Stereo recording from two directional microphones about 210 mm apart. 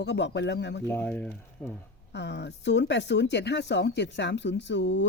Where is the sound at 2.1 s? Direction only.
55° left (ahead or behind).